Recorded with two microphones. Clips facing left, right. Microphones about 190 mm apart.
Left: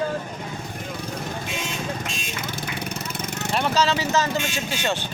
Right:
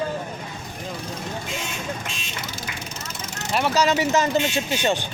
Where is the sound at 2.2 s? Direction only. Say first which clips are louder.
Left 3 dB; 50° left (ahead or behind).